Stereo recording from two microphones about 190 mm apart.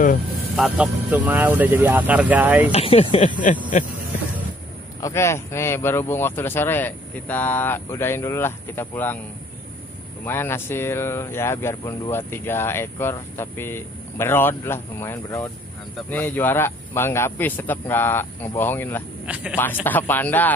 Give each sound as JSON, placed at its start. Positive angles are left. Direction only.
{"t": 0.6, "sound": "speech", "side_deg": -5}
{"t": 2.7, "sound": "speech", "side_deg": 30}
{"t": 5.0, "sound": "speech", "side_deg": 15}
{"t": 10.2, "sound": "speech", "side_deg": 10}
{"t": 19.2, "sound": "speech", "side_deg": -5}
{"t": 19.5, "sound": "speech", "side_deg": 10}